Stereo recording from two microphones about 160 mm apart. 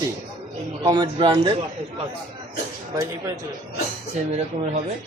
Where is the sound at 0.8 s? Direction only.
25° right (ahead or behind).